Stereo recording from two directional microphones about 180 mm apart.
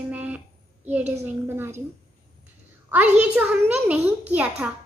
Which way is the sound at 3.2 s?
5° right (ahead or behind).